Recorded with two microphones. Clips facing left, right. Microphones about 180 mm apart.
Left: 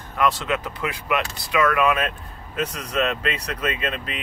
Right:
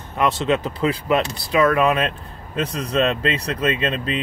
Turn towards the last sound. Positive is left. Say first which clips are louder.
# right 6 dB
turn(degrees=-30)  # may be behind; listen again after turning